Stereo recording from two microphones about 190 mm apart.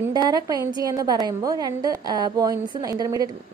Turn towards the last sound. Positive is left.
turn(degrees=-20)  # may be behind; listen again after turning